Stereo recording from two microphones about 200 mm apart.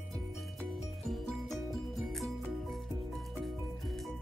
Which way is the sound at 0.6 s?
Centre (ahead or behind).